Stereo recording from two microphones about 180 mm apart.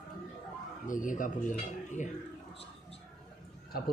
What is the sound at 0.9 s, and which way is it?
Speech, 45° left (ahead or behind).